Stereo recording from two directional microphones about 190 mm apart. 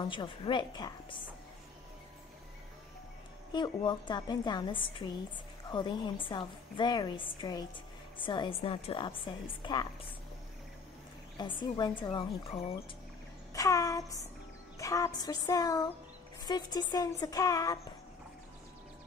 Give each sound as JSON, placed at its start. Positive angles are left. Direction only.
{"t": 0.0, "sound": "a woman's voice", "side_deg": 25}
{"t": 3.5, "sound": "a woman's voice", "side_deg": 25}
{"t": 11.3, "sound": "a woman's voice", "side_deg": 20}
{"t": 13.5, "sound": "child singing", "side_deg": 15}
{"t": 14.8, "sound": "a woman's voice", "side_deg": 15}